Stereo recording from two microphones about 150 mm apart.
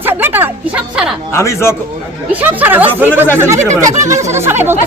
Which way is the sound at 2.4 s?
10° right (ahead or behind).